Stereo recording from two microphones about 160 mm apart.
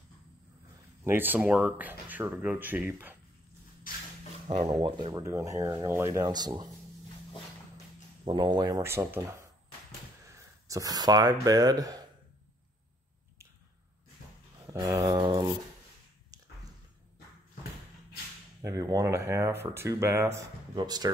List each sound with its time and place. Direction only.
1.0 s speech: 10° right (ahead or behind)
4.6 s speech: 25° right (ahead or behind)
8.3 s speech: 30° right (ahead or behind)
10.3 s speech: 20° right (ahead or behind)
14.7 s a sound: 20° right (ahead or behind)
18.6 s speech: 20° right (ahead or behind)